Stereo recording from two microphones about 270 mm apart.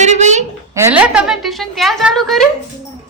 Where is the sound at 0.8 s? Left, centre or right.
Centre.